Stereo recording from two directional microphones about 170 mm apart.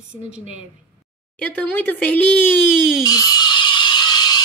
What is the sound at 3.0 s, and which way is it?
Rattle, 20° left (ahead or behind).